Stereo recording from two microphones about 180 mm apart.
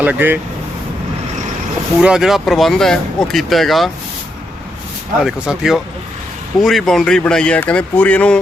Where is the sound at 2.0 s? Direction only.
5° right (ahead or behind).